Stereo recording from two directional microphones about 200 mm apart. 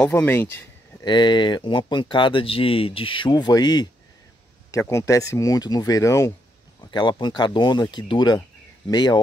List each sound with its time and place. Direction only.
0.0 s speech: 10° left (ahead or behind)
1.0 s speech: 20° left (ahead or behind)